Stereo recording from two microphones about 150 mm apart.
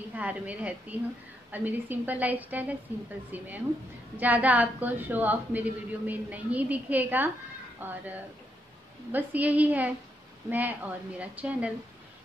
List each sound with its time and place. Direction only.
0.1 s a woman's voice: 10° right (ahead or behind)